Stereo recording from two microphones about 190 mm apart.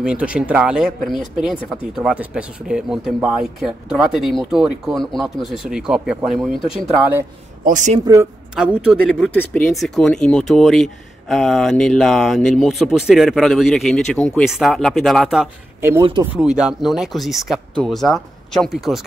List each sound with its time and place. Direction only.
0.0 s speech: 5° right (ahead or behind)
7.6 s speech: 40° right (ahead or behind)
8.0 s speech: 15° right (ahead or behind)
8.5 s speech: 5° right (ahead or behind)
9.1 s speech: 5° left (ahead or behind)
16.0 s speech: 25° right (ahead or behind)
16.3 s speech: 5° right (ahead or behind)